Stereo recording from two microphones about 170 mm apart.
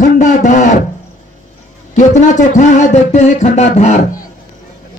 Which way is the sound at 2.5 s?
45° left (ahead or behind).